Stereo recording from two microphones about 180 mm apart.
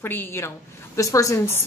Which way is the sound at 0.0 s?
10° left (ahead or behind).